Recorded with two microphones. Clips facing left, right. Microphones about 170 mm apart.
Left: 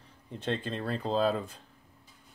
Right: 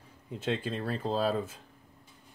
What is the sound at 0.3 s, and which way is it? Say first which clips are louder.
Speech: right 1 dB; 5° right (ahead or behind).